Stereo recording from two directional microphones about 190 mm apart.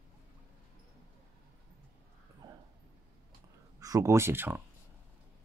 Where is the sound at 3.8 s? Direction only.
15° right (ahead or behind).